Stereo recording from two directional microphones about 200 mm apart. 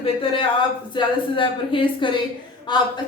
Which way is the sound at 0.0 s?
25° left (ahead or behind).